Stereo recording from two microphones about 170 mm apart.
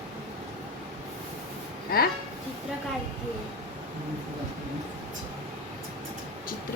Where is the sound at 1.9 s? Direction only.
65° left (ahead or behind).